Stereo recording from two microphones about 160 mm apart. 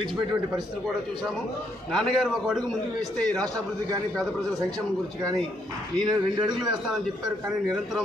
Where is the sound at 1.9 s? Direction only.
Centre (ahead or behind).